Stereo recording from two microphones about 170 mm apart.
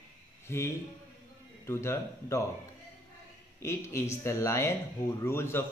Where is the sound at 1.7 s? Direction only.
15° left (ahead or behind).